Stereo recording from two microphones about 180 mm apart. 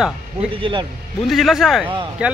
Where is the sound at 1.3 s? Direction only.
Centre (ahead or behind).